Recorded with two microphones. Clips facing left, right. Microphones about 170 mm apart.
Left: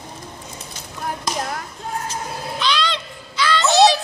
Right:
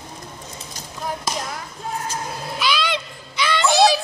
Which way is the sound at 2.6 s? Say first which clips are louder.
Even; 10° right (ahead or behind).